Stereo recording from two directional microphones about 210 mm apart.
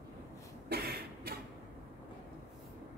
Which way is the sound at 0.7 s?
50° right (ahead or behind).